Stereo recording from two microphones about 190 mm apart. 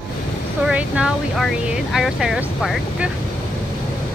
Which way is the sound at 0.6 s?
5° right (ahead or behind).